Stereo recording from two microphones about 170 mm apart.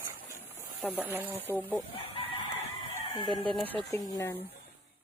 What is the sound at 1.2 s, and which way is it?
Speech, 10° left (ahead or behind).